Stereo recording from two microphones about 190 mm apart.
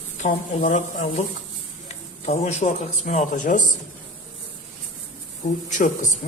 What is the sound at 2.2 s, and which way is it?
Speech, 35° left (ahead or behind).